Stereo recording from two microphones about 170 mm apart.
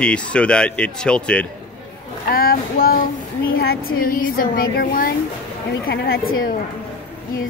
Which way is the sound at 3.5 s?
60° left (ahead or behind).